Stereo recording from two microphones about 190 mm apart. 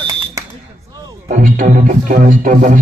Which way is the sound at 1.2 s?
40° right (ahead or behind).